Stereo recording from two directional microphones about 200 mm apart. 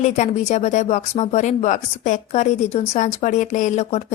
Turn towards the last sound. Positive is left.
turn(degrees=35)  # may be behind; listen again after turning